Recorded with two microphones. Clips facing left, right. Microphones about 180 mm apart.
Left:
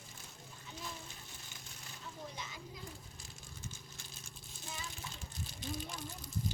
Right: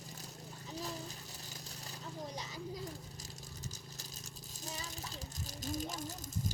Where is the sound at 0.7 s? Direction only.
35° right (ahead or behind).